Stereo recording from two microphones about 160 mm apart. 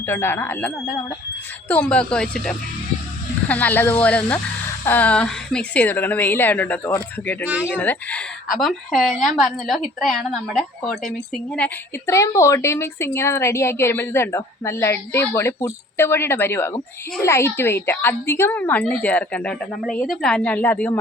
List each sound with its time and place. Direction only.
0.0 s a woman's voice: 15° left (ahead or behind)
7.4 s speech: 10° right (ahead or behind)
7.7 s a woman's voice: 10° left (ahead or behind)
11.5 s a woman's voice: 10° left (ahead or behind)
12.1 s a woman's voice: 20° left (ahead or behind)